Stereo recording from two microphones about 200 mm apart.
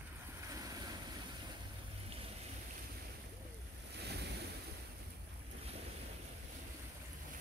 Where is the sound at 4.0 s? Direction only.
55° right (ahead or behind).